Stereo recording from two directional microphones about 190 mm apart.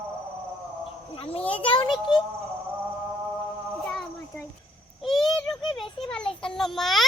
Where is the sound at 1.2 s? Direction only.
30° left (ahead or behind).